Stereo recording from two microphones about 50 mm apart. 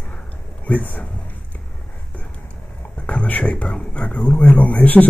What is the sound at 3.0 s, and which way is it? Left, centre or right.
Speech, left.